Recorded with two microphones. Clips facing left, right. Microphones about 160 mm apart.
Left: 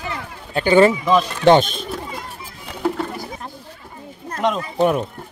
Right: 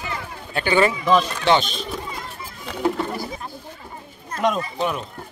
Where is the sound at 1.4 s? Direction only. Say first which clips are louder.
Left 6 dB; 50° left (ahead or behind).